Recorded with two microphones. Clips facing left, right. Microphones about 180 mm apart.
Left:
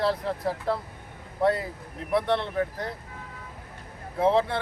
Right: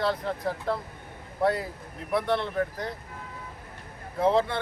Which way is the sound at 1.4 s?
Centre (ahead or behind).